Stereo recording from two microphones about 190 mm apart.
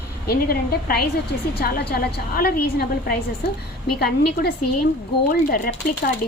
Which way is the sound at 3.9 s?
55° left (ahead or behind).